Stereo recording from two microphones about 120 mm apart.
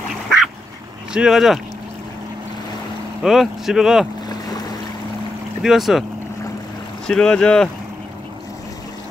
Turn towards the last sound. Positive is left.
turn(degrees=5)  # may be behind; listen again after turning